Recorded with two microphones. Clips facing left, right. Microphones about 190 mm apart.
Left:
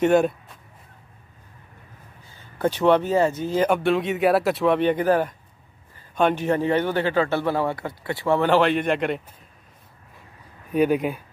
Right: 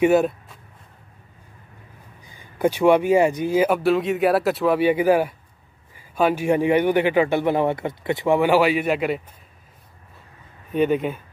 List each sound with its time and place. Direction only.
0.0 s speech: 5° right (ahead or behind)
2.2 s a man's voice: 15° right (ahead or behind)
10.7 s speech: 5° left (ahead or behind)